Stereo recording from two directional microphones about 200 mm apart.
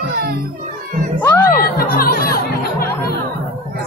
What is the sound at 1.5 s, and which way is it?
Speech, 45° left (ahead or behind).